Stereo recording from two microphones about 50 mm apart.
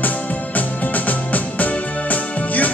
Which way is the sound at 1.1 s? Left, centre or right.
Left.